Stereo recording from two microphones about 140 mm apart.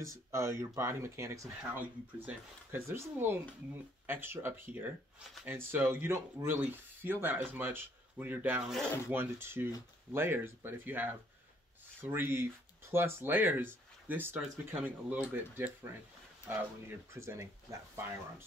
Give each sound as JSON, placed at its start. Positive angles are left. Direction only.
{"t": 0.3, "sound": "speech", "side_deg": -20}